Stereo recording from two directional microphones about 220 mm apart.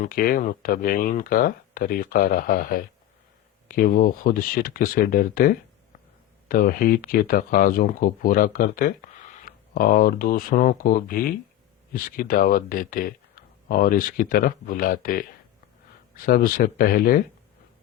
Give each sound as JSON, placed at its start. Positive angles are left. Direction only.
{"t": 0.0, "sound": "speech", "side_deg": 40}